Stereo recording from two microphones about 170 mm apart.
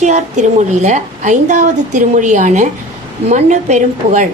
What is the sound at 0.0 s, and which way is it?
A woman's voice, 45° right (ahead or behind).